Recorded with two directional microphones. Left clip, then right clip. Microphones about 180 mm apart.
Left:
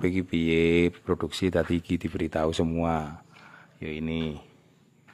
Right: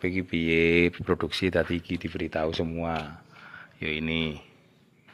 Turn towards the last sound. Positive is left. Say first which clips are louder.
# right 3 dB
turn(degrees=15)  # may be behind; listen again after turning